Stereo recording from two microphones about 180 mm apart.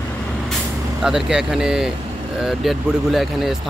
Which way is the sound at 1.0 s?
5° right (ahead or behind).